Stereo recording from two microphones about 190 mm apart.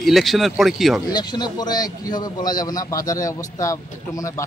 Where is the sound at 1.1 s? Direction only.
20° left (ahead or behind).